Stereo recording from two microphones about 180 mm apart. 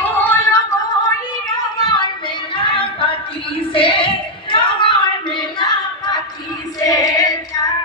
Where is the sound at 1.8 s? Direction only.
25° left (ahead or behind).